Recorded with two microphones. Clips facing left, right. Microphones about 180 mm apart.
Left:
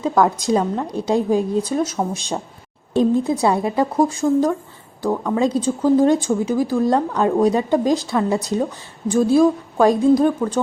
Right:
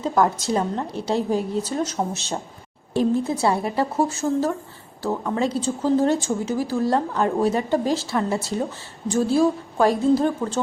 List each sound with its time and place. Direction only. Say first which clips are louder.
0.2 s speech: left 3 dB; 15° left (ahead or behind)